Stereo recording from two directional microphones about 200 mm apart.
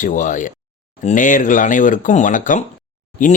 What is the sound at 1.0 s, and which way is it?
Speech, 40° left (ahead or behind).